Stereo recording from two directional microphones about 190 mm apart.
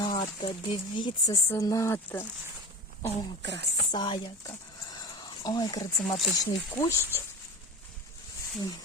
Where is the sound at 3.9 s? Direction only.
25° left (ahead or behind).